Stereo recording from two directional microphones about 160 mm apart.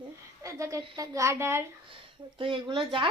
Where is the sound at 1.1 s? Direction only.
20° right (ahead or behind).